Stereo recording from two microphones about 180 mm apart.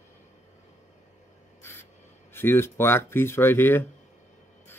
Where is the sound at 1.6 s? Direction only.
15° left (ahead or behind).